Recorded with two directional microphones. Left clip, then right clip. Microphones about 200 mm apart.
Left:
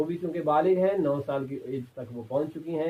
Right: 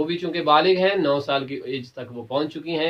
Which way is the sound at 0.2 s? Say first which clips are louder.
Right 8 dB; 10° right (ahead or behind).